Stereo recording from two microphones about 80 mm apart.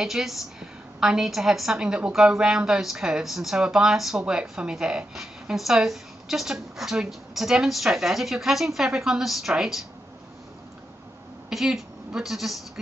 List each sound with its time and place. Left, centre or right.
0.0 s a woman's voice: centre
11.5 s speech: centre